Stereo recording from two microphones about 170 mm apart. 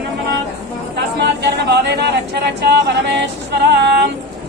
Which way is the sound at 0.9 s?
80° right.